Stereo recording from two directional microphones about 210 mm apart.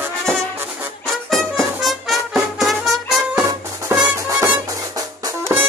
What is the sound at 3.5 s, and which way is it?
Music, 15° right (ahead or behind).